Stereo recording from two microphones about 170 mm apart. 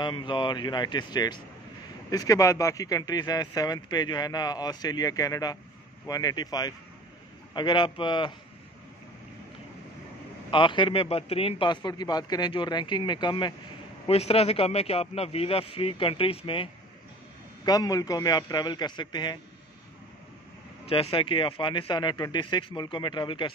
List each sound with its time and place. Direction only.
0.0 s speech: 30° left (ahead or behind)
10.5 s a man's voice: 30° left (ahead or behind)
17.6 s speech: 20° left (ahead or behind)
20.9 s speech: 30° left (ahead or behind)